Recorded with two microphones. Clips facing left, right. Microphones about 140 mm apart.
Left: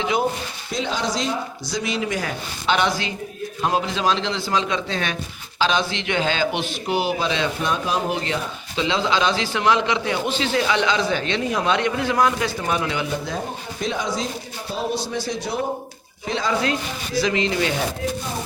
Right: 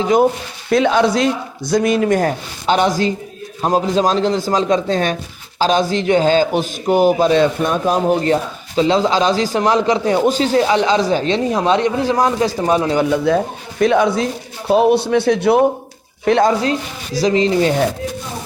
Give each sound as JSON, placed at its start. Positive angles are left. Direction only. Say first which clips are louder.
{"t": 0.0, "sound": "speech", "louder": "right 9 dB", "side_deg": -45}
{"t": 0.7, "sound": "a man's voice", "louder": "right 12 dB", "side_deg": -60}
{"t": 13.1, "sound": "speech", "louder": "right 11 dB", "side_deg": -75}
{"t": 16.5, "sound": "a man's voice", "louder": "right 5 dB", "side_deg": -40}